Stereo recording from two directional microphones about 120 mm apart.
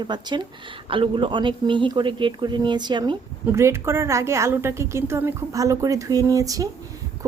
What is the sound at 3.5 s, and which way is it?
A woman's voice, 25° right (ahead or behind).